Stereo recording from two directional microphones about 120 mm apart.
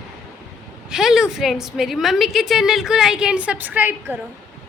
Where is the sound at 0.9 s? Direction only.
5° right (ahead or behind).